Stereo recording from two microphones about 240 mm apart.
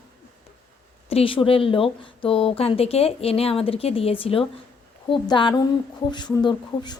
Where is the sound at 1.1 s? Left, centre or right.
Left.